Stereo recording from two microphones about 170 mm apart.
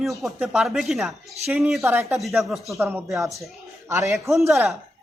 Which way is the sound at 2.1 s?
Centre (ahead or behind).